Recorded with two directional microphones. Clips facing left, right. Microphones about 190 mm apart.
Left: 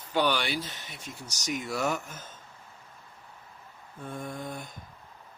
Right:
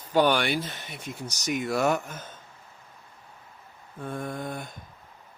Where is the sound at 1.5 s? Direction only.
55° right (ahead or behind).